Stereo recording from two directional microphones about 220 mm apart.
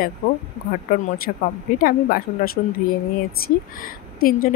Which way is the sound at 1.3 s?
40° left (ahead or behind).